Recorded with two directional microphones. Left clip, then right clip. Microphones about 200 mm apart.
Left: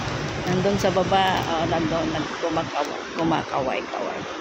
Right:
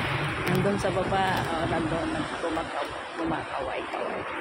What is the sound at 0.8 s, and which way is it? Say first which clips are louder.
Speech: left 6 dB; 30° left (ahead or behind).